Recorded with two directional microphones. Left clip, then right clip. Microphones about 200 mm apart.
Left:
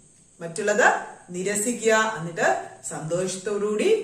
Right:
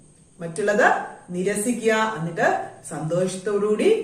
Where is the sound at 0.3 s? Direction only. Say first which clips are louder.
Right 2 dB; 20° left (ahead or behind).